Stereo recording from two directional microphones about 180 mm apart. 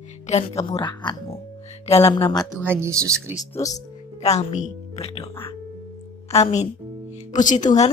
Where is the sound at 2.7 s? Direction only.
15° right (ahead or behind).